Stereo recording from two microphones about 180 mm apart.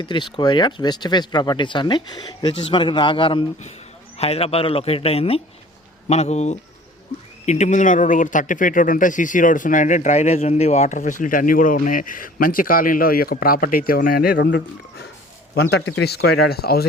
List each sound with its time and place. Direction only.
0.0 s a man's voice: 25° left (ahead or behind); by 16.8 s 60° left (ahead or behind)